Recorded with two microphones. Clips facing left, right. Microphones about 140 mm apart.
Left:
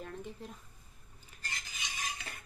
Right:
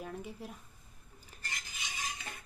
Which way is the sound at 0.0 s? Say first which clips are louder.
Right 1 dB; 5° right (ahead or behind).